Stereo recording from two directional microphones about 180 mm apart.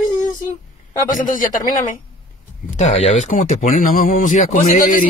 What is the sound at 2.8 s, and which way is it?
Speech, 40° left (ahead or behind).